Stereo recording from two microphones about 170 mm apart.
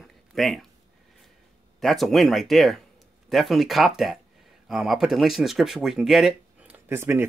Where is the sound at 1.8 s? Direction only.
Centre (ahead or behind).